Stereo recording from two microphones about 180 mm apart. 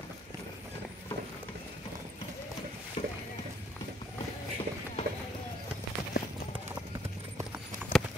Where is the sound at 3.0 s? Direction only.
40° left (ahead or behind).